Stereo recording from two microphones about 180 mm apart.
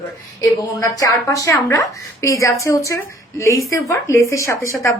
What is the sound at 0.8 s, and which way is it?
A woman's voice, 20° left (ahead or behind).